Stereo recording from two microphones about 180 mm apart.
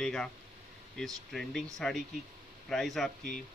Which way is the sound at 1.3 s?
Centre (ahead or behind).